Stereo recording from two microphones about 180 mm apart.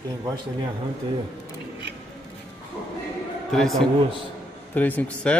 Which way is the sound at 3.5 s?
Centre (ahead or behind).